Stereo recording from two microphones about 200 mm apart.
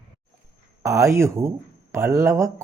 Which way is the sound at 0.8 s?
15° right (ahead or behind).